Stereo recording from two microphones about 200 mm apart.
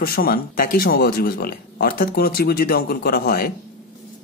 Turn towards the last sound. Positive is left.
turn(degrees=50)  # may be behind; listen again after turning